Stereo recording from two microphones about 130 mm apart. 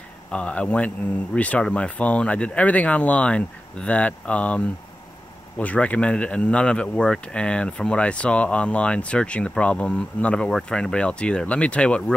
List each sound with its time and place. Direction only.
0.3 s speech: 10° left (ahead or behind)